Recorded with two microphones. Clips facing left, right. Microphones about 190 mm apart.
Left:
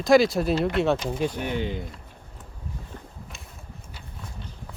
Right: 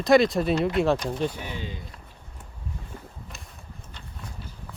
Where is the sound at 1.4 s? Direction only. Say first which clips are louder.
Left 7 dB; 60° left (ahead or behind).